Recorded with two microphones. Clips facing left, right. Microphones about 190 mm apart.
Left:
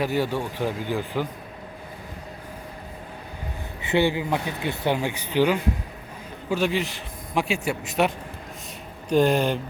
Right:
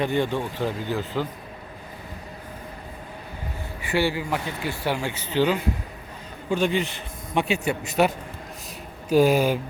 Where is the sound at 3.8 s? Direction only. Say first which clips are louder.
Left 2 dB; 20° left (ahead or behind).